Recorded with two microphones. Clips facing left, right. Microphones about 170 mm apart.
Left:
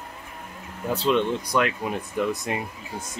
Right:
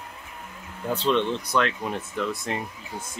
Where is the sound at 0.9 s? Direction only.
5° left (ahead or behind).